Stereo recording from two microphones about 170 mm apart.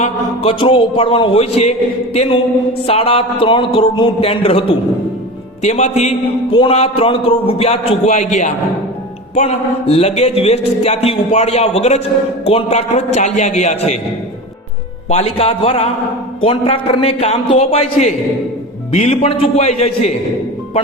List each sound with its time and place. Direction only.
0.0 s speech: 35° left (ahead or behind)
5.6 s speech: 40° left (ahead or behind)
15.1 s speech: 35° left (ahead or behind)